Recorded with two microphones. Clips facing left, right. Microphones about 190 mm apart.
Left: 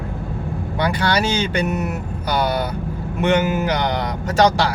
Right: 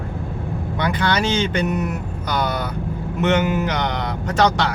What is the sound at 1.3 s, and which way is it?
Speech, 10° left (ahead or behind).